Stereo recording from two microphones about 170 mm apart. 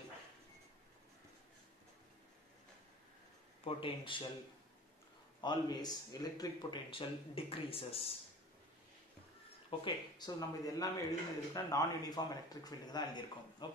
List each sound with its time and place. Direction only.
3.6 s speech: 30° left (ahead or behind)
5.4 s speech: 25° left (ahead or behind)
9.7 s speech: 25° left (ahead or behind)